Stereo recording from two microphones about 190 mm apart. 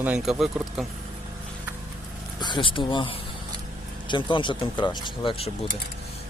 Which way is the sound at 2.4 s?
25° left (ahead or behind).